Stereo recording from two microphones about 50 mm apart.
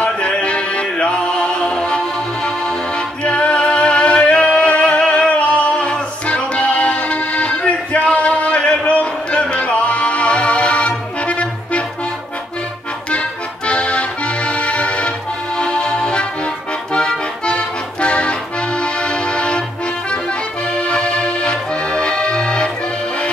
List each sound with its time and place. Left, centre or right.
0.0 s music: left
13.1 s accordion: left